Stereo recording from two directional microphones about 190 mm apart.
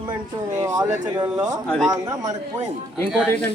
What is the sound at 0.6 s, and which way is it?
Speech, 20° right (ahead or behind).